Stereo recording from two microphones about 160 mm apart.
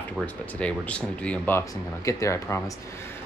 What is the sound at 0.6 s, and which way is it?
Speech, 10° left (ahead or behind).